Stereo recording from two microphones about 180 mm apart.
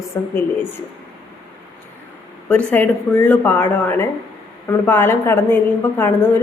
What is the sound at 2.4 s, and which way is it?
A woman's voice, 5° left (ahead or behind).